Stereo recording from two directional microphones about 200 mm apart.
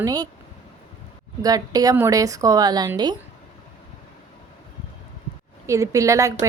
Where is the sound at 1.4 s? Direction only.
20° right (ahead or behind).